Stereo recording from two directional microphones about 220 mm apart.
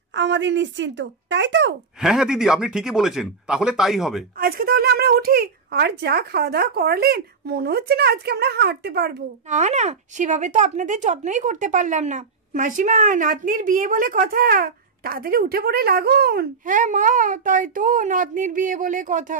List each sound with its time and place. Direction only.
0.1 s speech: 55° right (ahead or behind)
2.0 s speech: 5° right (ahead or behind)
4.4 s speech: 40° right (ahead or behind)
9.5 s speech: 30° right (ahead or behind)